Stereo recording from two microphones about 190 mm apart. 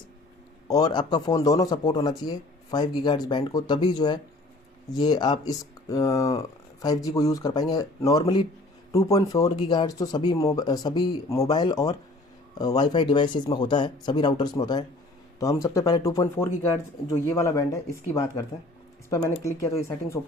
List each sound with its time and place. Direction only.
0.7 s a man's voice: 20° left (ahead or behind)